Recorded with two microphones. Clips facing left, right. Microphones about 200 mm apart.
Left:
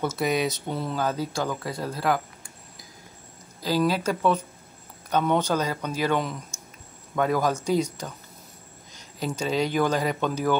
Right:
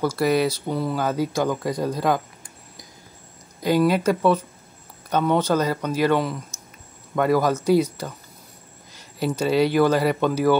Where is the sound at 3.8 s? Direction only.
10° right (ahead or behind).